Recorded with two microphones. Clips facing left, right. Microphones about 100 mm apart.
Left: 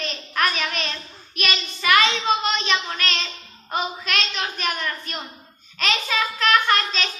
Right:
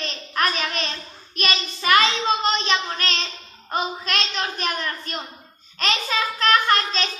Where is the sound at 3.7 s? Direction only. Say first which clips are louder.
Even; 35° right (ahead or behind).